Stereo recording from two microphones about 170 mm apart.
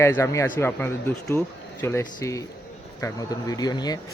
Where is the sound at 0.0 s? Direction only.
15° left (ahead or behind).